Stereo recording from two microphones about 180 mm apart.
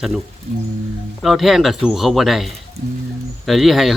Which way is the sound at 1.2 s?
Centre (ahead or behind).